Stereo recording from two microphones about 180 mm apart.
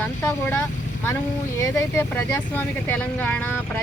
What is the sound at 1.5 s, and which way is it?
Speech, 15° left (ahead or behind).